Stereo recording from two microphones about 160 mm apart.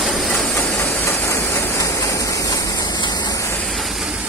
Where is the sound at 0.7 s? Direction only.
15° left (ahead or behind).